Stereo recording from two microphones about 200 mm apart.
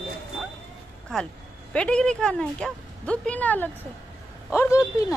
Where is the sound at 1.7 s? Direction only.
5° left (ahead or behind).